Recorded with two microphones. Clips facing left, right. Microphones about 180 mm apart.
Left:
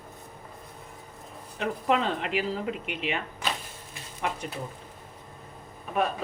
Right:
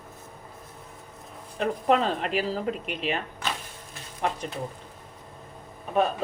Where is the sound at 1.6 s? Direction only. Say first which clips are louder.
Right 3 dB; 40° right (ahead or behind).